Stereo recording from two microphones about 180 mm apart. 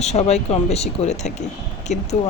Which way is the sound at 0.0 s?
35° left (ahead or behind).